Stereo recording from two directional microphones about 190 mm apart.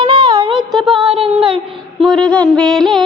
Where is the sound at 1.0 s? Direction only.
30° right (ahead or behind).